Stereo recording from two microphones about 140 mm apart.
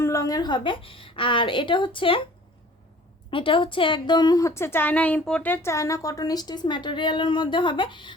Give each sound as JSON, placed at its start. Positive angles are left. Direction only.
{"t": 0.0, "sound": "a woman's voice", "side_deg": 25}
{"t": 3.2, "sound": "a woman's voice", "side_deg": 35}